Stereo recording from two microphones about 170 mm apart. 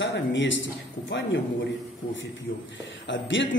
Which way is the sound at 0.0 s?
90° left.